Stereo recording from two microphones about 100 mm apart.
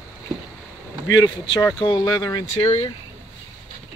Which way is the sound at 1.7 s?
45° left (ahead or behind).